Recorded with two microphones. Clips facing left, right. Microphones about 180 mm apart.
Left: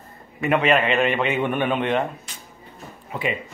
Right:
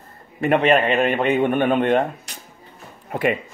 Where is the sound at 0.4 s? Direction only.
35° right (ahead or behind).